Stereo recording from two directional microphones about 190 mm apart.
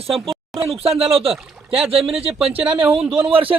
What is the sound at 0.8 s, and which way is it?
A man's voice, 30° right (ahead or behind).